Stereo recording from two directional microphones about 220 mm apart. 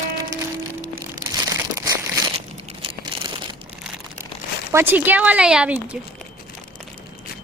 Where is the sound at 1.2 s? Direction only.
15° right (ahead or behind).